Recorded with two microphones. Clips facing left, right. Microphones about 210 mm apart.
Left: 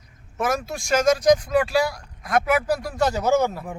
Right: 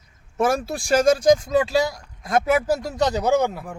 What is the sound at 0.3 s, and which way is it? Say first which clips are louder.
Speech: right 4 dB; 30° right (ahead or behind).